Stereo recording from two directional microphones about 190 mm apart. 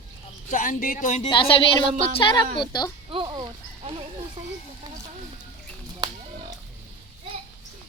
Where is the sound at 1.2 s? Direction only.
25° left (ahead or behind).